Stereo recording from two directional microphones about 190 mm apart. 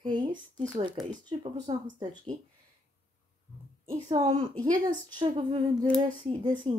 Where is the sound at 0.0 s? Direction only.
25° right (ahead or behind).